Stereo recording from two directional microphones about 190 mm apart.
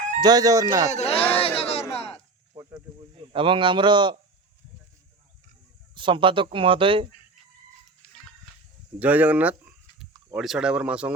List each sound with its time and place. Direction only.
0.2 s speech: 20° right (ahead or behind)
0.9 s speech: 35° left (ahead or behind)
1.4 s a sound: 30° left (ahead or behind)
2.5 s a sound: 20° right (ahead or behind)
3.2 s a man's voice: 25° right (ahead or behind)
5.9 s speech: 25° right (ahead or behind)
9.0 s speech: 10° right (ahead or behind)